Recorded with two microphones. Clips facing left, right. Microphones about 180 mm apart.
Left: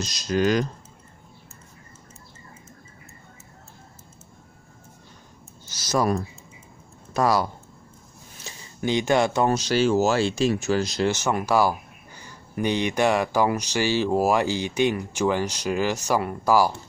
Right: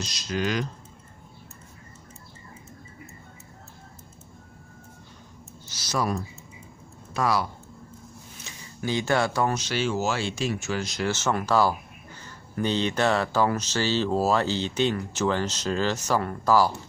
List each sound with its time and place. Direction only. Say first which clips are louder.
0.0 s speech: left 6 dB; 45° left (ahead or behind)
5.7 s a sound: left 5 dB; 45° left (ahead or behind)
7.2 s speech: left 4 dB; 40° left (ahead or behind)
8.5 s a sound: left 3 dB; 35° left (ahead or behind)
8.8 s speech: left 4 dB; 20° left (ahead or behind)
9.5 s speech: left 6 dB; 35° left (ahead or behind)
11.1 s speech: right 2 dB; 15° left (ahead or behind)